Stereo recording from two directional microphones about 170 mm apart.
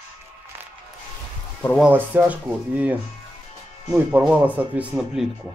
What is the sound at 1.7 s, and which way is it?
Speech, 10° right (ahead or behind).